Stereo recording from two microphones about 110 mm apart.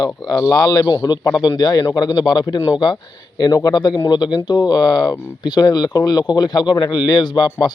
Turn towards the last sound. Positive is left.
turn(degrees=40)  # may be behind; listen again after turning